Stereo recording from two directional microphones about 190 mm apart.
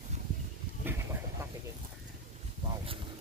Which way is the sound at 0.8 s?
15° right (ahead or behind).